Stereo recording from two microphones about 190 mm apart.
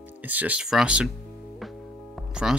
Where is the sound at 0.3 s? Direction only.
10° right (ahead or behind).